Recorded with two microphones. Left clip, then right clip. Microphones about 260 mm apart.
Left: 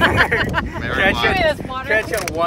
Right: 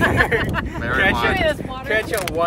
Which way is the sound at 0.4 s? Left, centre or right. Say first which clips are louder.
Left 3 dB; left.